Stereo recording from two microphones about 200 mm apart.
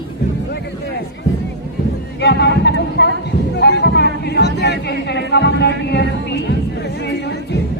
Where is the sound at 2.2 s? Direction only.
60° left (ahead or behind).